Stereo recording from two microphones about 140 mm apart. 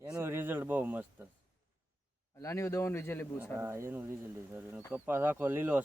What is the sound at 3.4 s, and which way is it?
Speech, 15° right (ahead or behind).